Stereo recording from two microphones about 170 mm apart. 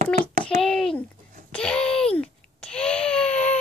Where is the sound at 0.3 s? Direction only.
50° right (ahead or behind).